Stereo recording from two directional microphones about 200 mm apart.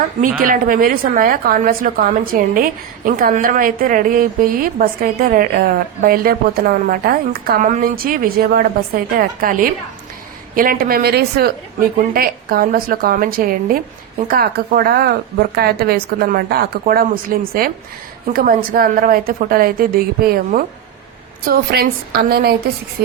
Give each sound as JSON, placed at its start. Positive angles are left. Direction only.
{"t": 0.2, "sound": "a woman's voice", "side_deg": -45}